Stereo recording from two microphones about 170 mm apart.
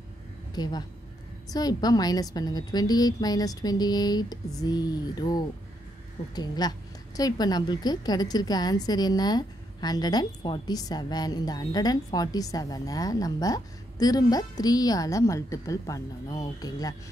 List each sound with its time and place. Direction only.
0.6 s a woman's voice: 25° left (ahead or behind)